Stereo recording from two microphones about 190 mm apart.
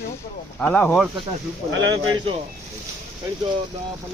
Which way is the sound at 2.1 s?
25° right (ahead or behind).